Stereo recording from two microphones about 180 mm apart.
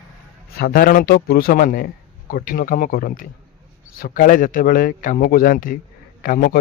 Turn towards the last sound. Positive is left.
turn(degrees=50)  # may be behind; listen again after turning